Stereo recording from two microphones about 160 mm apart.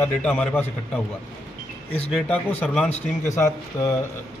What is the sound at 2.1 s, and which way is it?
A man's voice, 10° left (ahead or behind).